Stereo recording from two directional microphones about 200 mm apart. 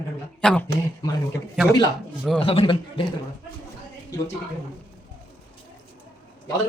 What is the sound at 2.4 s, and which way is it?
Speech, 25° left (ahead or behind).